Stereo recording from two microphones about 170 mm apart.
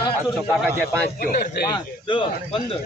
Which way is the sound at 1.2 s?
60° left (ahead or behind).